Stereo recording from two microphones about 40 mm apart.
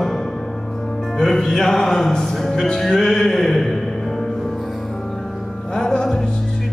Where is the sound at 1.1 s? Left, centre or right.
Centre.